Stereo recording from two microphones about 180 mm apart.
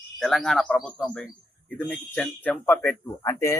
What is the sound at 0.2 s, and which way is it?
A man's voice, centre (ahead or behind).